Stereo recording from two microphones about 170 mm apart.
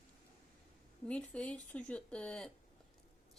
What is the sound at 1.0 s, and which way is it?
A woman's voice, 5° left (ahead or behind).